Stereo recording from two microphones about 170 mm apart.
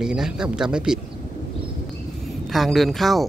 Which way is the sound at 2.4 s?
Centre (ahead or behind).